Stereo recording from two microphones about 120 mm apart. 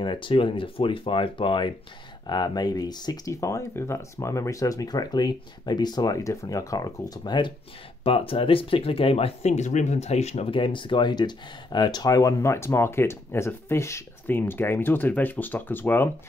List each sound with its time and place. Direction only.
0.0 s speech: 45° left (ahead or behind)
8.0 s speech: 50° left (ahead or behind); by 16.1 s 15° left (ahead or behind)